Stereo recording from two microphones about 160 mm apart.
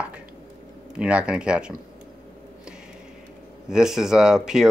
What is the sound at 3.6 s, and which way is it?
Speech, 5° right (ahead or behind).